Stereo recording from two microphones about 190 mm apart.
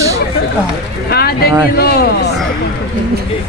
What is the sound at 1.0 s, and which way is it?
Speech, 55° left (ahead or behind).